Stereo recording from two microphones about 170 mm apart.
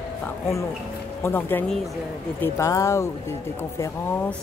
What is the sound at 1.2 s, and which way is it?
Speech, 10° left (ahead or behind).